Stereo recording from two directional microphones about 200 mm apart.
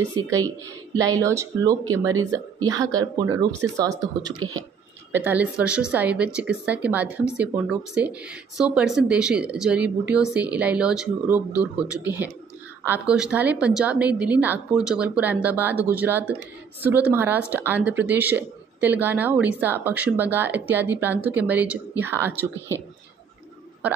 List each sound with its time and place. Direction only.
0.9 s a woman's voice: 15° right (ahead or behind)
5.1 s a woman's voice: 10° right (ahead or behind)